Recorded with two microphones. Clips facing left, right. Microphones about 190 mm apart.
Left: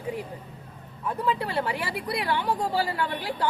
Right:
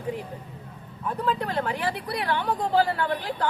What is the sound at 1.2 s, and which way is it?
Speech, 10° left (ahead or behind).